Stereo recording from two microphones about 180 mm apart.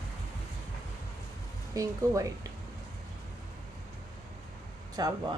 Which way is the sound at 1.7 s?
15° right (ahead or behind).